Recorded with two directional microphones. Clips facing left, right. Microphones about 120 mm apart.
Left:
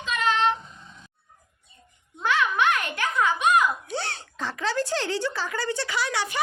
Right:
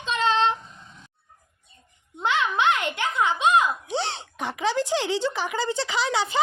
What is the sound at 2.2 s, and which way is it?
A child's voice, 25° right (ahead or behind).